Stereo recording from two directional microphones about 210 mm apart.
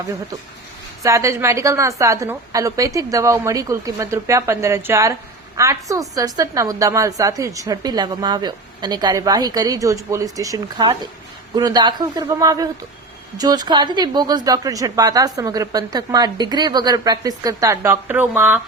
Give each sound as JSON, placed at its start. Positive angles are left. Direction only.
{"t": 1.0, "sound": "a woman's voice", "side_deg": -15}